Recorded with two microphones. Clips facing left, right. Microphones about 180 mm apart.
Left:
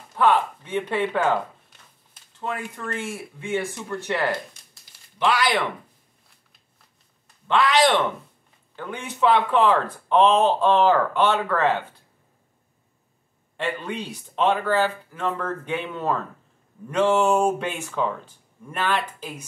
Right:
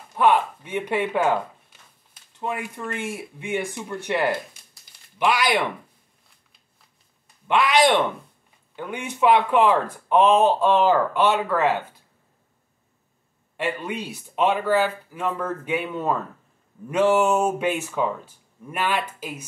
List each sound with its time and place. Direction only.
0.1 s speech: 15° right (ahead or behind)
7.4 s speech: 15° right (ahead or behind)
13.6 s speech: 10° right (ahead or behind)